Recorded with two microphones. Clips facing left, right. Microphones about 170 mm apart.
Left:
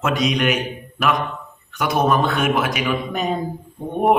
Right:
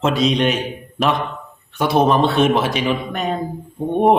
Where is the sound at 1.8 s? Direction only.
30° right (ahead or behind).